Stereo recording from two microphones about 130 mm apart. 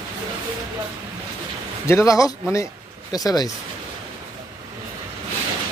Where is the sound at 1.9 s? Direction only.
25° left (ahead or behind).